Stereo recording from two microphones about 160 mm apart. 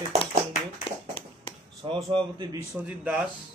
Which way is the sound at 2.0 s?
30° right (ahead or behind).